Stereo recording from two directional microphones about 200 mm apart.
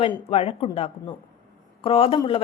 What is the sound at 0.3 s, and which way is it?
A woman's voice, 30° left (ahead or behind).